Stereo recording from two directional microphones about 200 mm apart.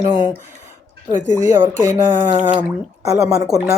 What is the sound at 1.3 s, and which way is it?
Speech, 15° right (ahead or behind).